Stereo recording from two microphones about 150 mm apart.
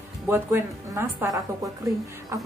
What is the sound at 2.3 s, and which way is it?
Speech, 20° right (ahead or behind).